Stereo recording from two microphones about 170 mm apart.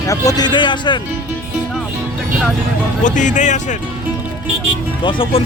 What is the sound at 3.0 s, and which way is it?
Speech, 45° left (ahead or behind).